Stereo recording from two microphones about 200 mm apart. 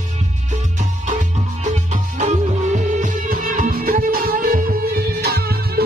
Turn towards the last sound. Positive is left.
turn(degrees=-50)  # may be behind; listen again after turning